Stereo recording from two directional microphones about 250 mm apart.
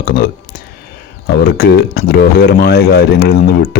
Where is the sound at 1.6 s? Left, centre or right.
Left.